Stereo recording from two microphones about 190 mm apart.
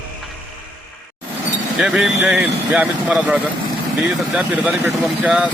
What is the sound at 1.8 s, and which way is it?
Speech, 5° right (ahead or behind).